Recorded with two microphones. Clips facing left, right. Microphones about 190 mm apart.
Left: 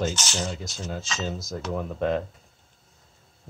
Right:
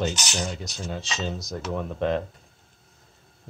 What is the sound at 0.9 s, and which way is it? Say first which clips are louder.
Speech: even; centre (ahead or behind).